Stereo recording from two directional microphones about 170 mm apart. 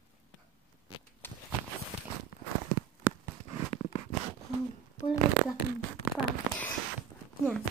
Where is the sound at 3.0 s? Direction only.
15° right (ahead or behind).